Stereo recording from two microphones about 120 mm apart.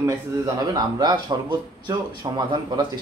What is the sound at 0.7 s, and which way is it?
Speech, 35° right (ahead or behind).